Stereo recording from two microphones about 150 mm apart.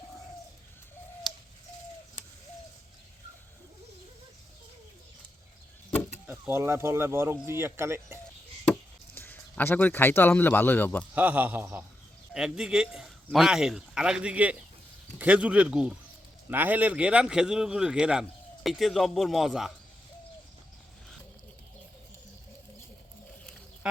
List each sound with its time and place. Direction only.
6.2 s speech: 10° right (ahead or behind)
9.1 s speech: 15° left (ahead or behind)
11.1 s a man's voice: 10° right (ahead or behind)
23.8 s a sound: 5° right (ahead or behind)